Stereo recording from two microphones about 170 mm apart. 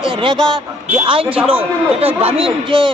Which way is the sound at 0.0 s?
30° right (ahead or behind).